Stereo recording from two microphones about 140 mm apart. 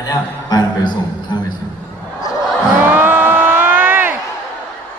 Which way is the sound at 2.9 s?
15° right (ahead or behind).